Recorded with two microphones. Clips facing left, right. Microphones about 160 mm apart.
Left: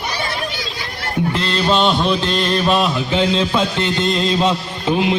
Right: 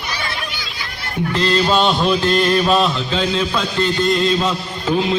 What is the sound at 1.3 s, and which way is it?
Music, centre (ahead or behind).